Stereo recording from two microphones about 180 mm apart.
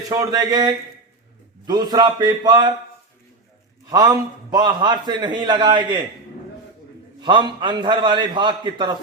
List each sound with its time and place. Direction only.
0.1 s a man's voice: 20° right (ahead or behind)
3.8 s a man's voice: 20° right (ahead or behind)
7.2 s a man's voice: 25° right (ahead or behind)